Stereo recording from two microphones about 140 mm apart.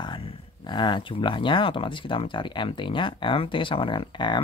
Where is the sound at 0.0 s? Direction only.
40° left (ahead or behind).